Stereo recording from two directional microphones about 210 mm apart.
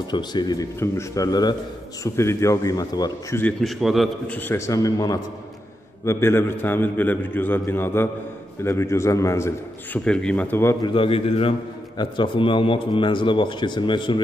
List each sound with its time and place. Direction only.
0.1 s a man's voice: 20° left (ahead or behind)
10.9 s a man's voice: 25° left (ahead or behind)